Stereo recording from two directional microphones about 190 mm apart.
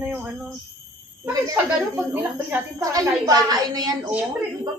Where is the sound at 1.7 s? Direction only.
10° right (ahead or behind).